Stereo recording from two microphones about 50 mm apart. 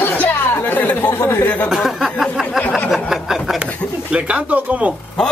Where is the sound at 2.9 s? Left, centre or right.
Centre.